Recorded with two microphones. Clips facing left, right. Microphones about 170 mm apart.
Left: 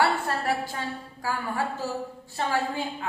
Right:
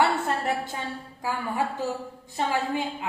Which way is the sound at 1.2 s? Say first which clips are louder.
Right 1 dB; 20° right (ahead or behind).